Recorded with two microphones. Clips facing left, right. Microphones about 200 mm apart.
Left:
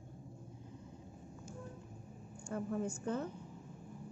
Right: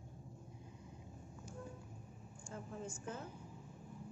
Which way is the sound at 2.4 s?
65° left (ahead or behind).